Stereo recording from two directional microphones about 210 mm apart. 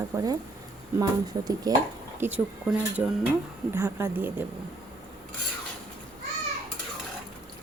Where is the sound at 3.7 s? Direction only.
10° right (ahead or behind).